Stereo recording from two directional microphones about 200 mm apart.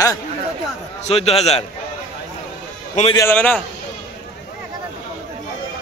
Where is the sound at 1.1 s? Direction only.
30° left (ahead or behind).